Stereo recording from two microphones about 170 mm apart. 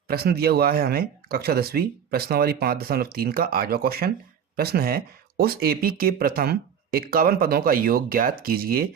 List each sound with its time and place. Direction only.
0.1 s speech: 65° right (ahead or behind)